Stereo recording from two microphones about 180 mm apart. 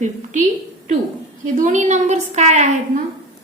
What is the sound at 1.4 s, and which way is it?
A woman's voice, 45° right (ahead or behind).